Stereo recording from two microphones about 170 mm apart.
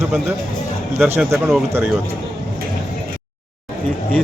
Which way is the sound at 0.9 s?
10° right (ahead or behind).